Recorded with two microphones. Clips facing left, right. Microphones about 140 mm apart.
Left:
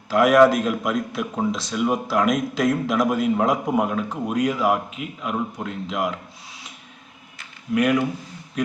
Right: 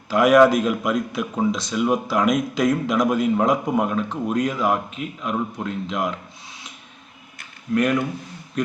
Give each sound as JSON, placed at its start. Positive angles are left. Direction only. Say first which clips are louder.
{"t": 0.1, "sound": "speech", "louder": "right 1 dB", "side_deg": 0}